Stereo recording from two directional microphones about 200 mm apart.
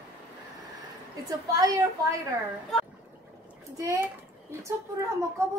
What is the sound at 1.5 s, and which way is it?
Speech, 15° right (ahead or behind).